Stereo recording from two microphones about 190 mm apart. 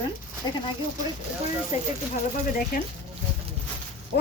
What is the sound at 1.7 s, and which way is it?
Speech, 40° left (ahead or behind).